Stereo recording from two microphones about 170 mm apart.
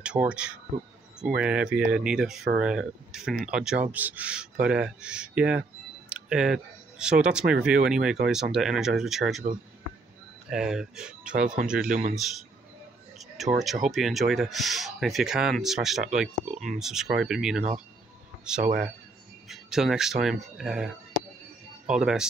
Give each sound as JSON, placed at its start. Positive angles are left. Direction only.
{"t": 0.0, "sound": "speech", "side_deg": -5}
{"t": 10.5, "sound": "speech", "side_deg": -5}
{"t": 11.9, "sound": "speech", "side_deg": -45}
{"t": 13.4, "sound": "speech", "side_deg": 0}
{"t": 18.6, "sound": "speech", "side_deg": -60}
{"t": 19.5, "sound": "speech", "side_deg": -5}